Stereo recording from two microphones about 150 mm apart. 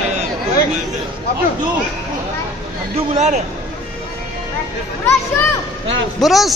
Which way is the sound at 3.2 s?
50° right (ahead or behind).